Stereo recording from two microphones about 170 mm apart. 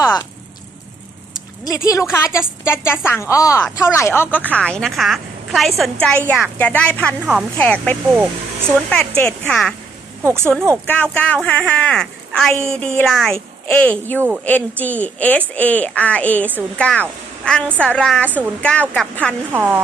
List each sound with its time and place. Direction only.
1.6 s speech: 20° left (ahead or behind)
8.1 s speech: 10° right (ahead or behind)
8.9 s speech: 5° left (ahead or behind)
10.2 s speech: 15° right (ahead or behind)
10.8 s speech: 10° left (ahead or behind)
19.5 s speech: 10° right (ahead or behind)